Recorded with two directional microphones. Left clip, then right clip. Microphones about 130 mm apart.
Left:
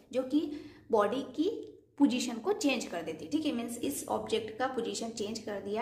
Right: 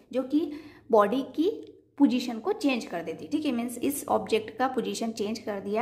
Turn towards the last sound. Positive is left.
turn(degrees=-50)  # may be behind; listen again after turning